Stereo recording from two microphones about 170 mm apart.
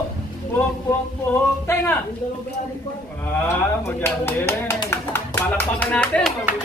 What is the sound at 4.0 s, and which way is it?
Speech, 15° left (ahead or behind).